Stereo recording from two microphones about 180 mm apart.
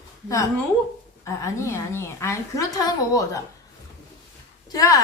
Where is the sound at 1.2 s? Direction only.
15° left (ahead or behind).